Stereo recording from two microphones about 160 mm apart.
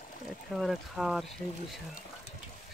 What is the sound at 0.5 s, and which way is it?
Speech, centre (ahead or behind).